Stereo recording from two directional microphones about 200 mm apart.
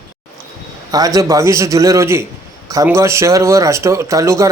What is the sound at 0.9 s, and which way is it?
Speech, 20° right (ahead or behind).